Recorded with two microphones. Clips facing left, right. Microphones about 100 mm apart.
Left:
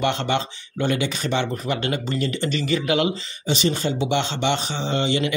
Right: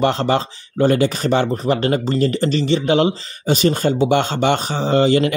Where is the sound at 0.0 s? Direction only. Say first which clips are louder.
Right 5 dB; 40° right (ahead or behind).